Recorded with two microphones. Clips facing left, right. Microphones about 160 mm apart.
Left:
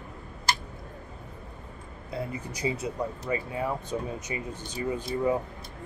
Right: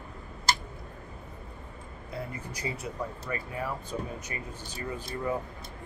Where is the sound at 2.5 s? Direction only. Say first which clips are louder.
Left 6 dB; 20° left (ahead or behind).